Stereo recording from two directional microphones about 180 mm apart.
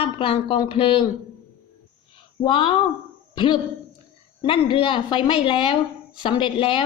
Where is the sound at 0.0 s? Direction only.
30° left (ahead or behind).